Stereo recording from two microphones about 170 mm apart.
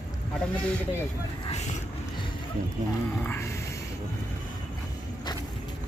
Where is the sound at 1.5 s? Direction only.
40° left (ahead or behind).